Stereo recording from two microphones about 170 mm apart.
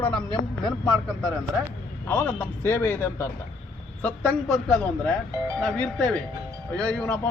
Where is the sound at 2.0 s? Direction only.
10° left (ahead or behind).